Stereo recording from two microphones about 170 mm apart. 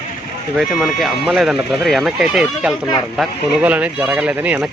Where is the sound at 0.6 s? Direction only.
Centre (ahead or behind).